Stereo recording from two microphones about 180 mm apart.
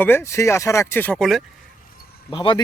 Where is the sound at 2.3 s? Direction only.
25° left (ahead or behind).